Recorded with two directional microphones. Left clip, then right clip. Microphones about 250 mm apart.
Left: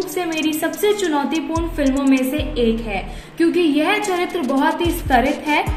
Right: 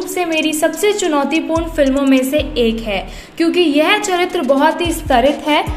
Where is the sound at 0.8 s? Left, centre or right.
Right.